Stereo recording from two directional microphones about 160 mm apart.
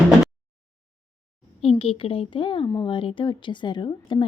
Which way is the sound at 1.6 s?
35° left (ahead or behind).